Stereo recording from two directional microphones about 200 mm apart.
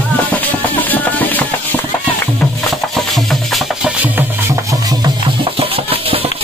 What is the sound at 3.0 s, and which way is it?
Music, centre (ahead or behind).